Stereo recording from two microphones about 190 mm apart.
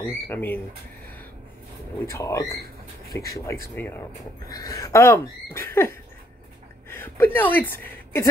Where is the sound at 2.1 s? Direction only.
15° left (ahead or behind).